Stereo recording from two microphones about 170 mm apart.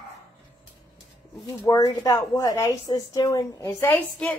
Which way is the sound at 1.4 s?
20° left (ahead or behind).